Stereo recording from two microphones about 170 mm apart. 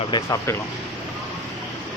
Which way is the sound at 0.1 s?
20° left (ahead or behind).